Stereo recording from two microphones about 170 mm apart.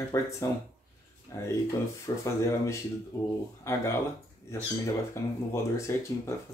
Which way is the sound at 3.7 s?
15° left (ahead or behind).